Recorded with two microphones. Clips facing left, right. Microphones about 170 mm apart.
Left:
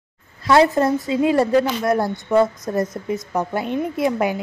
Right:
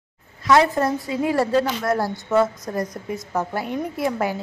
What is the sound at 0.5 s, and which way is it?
A woman's voice, 25° left (ahead or behind).